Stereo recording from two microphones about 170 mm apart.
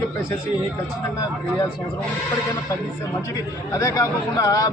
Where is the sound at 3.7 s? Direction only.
20° left (ahead or behind).